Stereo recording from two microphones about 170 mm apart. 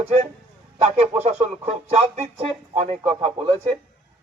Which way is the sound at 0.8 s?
40° right (ahead or behind).